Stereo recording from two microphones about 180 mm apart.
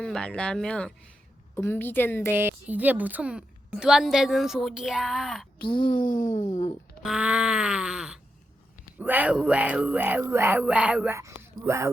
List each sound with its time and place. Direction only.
0.0 s a woman's voice: 5° left (ahead or behind)
2.3 s a woman's voice: 10° right (ahead or behind)
5.6 s speech: 25° left (ahead or behind)
6.0 s speech: 45° left (ahead or behind)
7.0 s a woman's voice: 5° right (ahead or behind)